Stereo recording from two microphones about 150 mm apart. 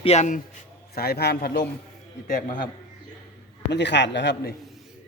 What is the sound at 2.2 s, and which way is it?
Speech, 65° left (ahead or behind).